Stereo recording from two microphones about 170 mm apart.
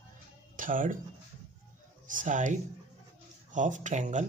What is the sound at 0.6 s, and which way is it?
Speech, 50° right (ahead or behind).